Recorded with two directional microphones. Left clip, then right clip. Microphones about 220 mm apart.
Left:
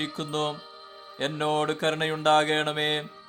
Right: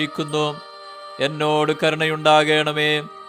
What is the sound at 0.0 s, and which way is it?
Mantra, 20° right (ahead or behind).